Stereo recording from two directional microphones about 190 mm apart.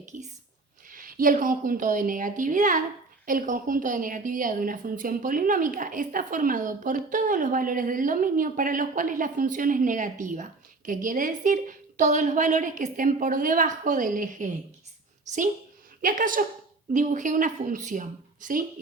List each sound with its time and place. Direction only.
0.0 s whispering: 40° right (ahead or behind)
0.9 s a woman's voice: 45° right (ahead or behind)